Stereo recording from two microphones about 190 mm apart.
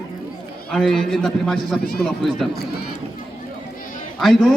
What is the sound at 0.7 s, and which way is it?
A man's voice, centre (ahead or behind).